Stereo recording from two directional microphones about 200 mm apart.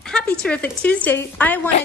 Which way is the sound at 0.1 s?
5° left (ahead or behind).